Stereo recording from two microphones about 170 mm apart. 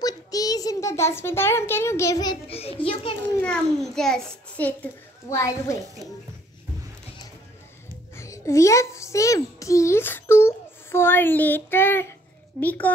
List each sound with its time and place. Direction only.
0.0 s a child's voice: 20° left (ahead or behind)
2.5 s a child's voice: 35° left (ahead or behind)
3.3 s a child's voice: 5° left (ahead or behind)
5.3 s a child's voice: 15° left (ahead or behind)
8.2 s a child's voice: 15° left (ahead or behind)